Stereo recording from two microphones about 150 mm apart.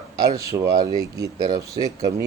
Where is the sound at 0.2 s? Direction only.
20° right (ahead or behind).